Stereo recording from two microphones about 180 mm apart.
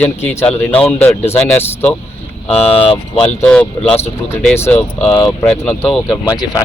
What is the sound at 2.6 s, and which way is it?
Speech, 30° left (ahead or behind).